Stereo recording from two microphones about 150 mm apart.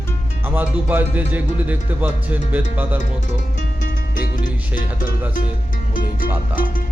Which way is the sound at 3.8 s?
65° left (ahead or behind).